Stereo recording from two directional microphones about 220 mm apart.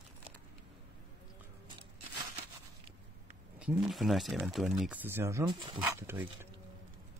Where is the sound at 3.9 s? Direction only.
Centre (ahead or behind).